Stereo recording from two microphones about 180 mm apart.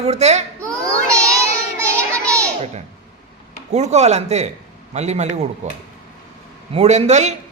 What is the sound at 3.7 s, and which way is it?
Speech, 40° right (ahead or behind).